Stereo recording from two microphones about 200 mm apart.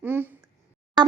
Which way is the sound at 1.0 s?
20° right (ahead or behind).